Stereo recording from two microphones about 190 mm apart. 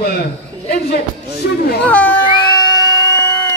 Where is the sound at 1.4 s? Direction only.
60° left (ahead or behind).